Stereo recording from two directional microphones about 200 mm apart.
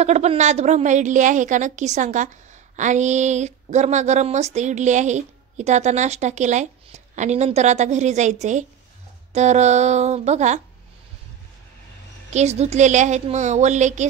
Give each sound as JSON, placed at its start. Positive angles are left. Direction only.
{"t": 0.0, "sound": "a woman's voice", "side_deg": -35}
{"t": 12.3, "sound": "a woman's voice", "side_deg": -35}